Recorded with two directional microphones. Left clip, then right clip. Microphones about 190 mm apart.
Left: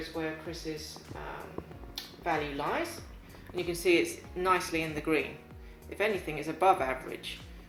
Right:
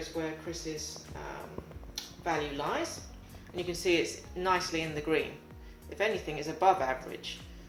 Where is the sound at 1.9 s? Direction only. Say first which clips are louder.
Left 1 dB; 5° left (ahead or behind).